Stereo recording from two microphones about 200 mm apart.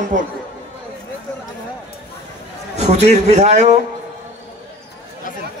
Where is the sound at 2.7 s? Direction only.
35° right (ahead or behind).